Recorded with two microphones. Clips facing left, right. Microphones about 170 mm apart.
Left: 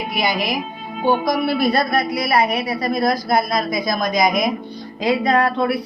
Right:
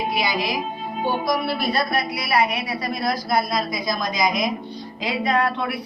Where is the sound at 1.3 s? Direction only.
50° left (ahead or behind).